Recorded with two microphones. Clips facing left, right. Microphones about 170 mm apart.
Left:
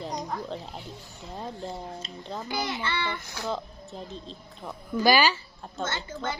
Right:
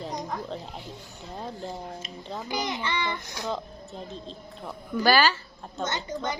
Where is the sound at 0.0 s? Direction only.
Centre (ahead or behind).